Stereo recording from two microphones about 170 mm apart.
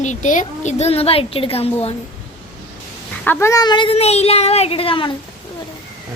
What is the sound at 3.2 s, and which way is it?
A woman's voice, 15° left (ahead or behind).